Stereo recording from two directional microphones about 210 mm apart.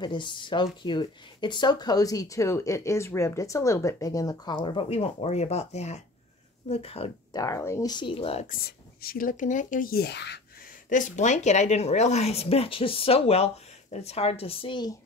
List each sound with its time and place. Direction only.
0.0 s speech: 20° left (ahead or behind)
7.3 s speech: 15° left (ahead or behind)
8.5 s speech: 45° left (ahead or behind)
10.9 s speech: 35° left (ahead or behind); by 15.0 s 20° left (ahead or behind)